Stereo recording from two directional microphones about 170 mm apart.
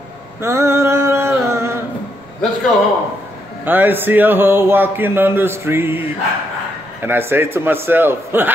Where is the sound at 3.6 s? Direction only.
10° right (ahead or behind).